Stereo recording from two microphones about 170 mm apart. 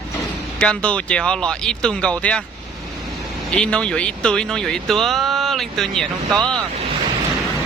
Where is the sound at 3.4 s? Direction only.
5° left (ahead or behind).